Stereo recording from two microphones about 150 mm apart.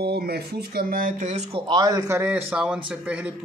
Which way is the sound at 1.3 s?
45° right (ahead or behind).